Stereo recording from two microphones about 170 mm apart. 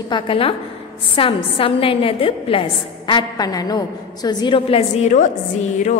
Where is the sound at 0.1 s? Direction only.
30° left (ahead or behind).